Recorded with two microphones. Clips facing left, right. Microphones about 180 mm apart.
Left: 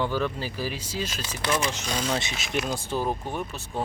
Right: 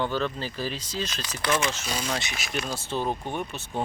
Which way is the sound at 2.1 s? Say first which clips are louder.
Left 3 dB; 25° left (ahead or behind).